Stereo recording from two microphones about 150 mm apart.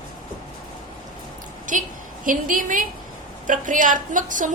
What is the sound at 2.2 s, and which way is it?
A woman's voice, 65° right (ahead or behind).